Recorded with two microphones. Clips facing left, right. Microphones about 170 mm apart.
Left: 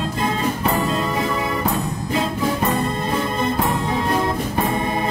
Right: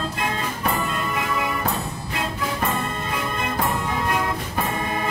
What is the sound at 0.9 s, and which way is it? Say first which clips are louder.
Music: left 5 dB; 35° left (ahead or behind).